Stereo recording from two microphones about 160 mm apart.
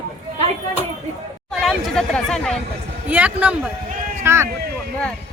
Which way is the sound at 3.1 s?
10° right (ahead or behind).